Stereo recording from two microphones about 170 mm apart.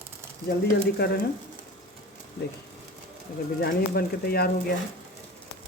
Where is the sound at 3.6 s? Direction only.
65° left (ahead or behind).